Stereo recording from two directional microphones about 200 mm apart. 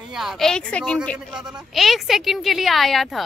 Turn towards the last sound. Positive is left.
turn(degrees=0)  # may be behind; listen again after turning